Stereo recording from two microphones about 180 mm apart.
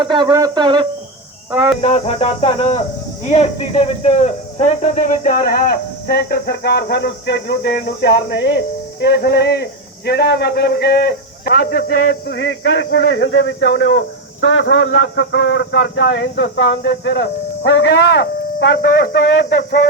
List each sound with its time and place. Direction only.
0.0 s speech: 25° right (ahead or behind)
1.8 s a man's voice: 35° left (ahead or behind); by 12.0 s 55° left (ahead or behind)
12.0 s a man's voice: 80° left; by 19.2 s 60° left (ahead or behind)